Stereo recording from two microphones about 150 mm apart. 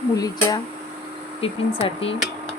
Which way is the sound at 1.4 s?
40° left (ahead or behind).